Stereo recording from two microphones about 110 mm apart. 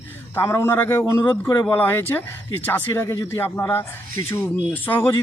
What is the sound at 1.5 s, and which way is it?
Speech, 35° left (ahead or behind).